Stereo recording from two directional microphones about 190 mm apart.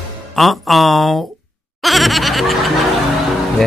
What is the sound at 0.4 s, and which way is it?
Speech, centre (ahead or behind).